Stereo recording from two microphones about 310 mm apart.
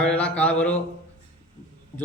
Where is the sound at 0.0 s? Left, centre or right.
Centre.